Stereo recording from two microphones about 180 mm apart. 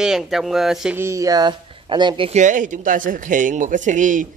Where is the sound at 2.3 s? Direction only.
40° right (ahead or behind).